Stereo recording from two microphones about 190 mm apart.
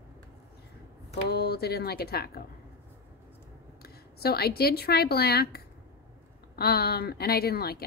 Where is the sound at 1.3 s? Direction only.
55° left (ahead or behind).